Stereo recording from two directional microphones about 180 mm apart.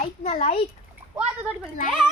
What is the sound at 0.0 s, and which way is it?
Speech, 40° left (ahead or behind).